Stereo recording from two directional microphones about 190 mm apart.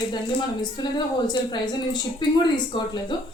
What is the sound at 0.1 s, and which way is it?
Speech, 25° left (ahead or behind).